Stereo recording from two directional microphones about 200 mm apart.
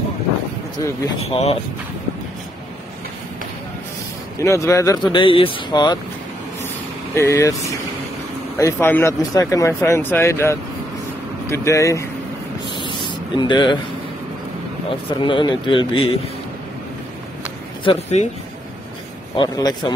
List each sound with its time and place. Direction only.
0.7 s speech: 20° left (ahead or behind)
1.2 s speech: 30° left (ahead or behind)
4.4 s speech: 15° left (ahead or behind)
7.2 s speech: 15° left (ahead or behind)
8.5 s speech: 15° left (ahead or behind)
13.4 s speech: 20° left (ahead or behind)
14.9 s speech: 25° left (ahead or behind)
17.8 s speech: 35° left (ahead or behind)
19.3 s speech: 20° left (ahead or behind)